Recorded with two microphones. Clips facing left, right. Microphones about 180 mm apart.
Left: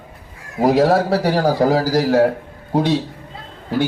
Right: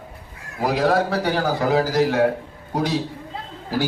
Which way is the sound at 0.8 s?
30° left (ahead or behind).